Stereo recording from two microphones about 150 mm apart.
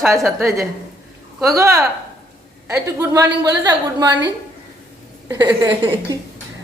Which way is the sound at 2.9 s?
20° right (ahead or behind).